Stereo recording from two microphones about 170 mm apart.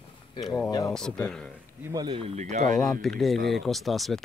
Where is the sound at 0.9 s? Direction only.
5° left (ahead or behind).